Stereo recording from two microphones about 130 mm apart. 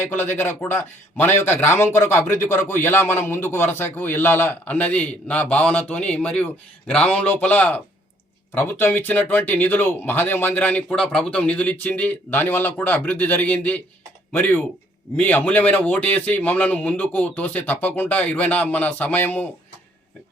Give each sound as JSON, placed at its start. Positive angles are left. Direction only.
{"t": 0.0, "sound": "speech", "side_deg": 15}